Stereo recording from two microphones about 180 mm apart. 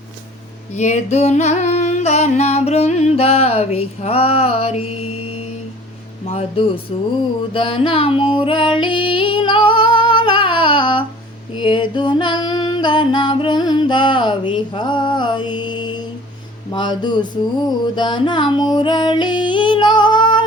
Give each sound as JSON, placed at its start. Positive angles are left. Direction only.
{"t": 0.8, "sound": "music", "side_deg": 40}
{"t": 6.2, "sound": "music", "side_deg": 35}
{"t": 11.5, "sound": "female singing", "side_deg": 25}
{"t": 16.7, "sound": "music", "side_deg": 25}